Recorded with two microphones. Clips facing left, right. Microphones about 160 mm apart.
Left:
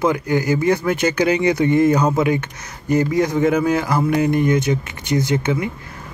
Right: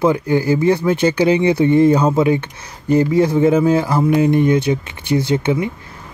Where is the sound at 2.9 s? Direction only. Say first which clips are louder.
Right 3 dB; 30° right (ahead or behind).